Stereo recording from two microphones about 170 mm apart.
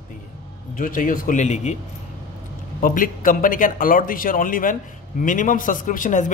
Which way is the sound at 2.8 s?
55° left (ahead or behind).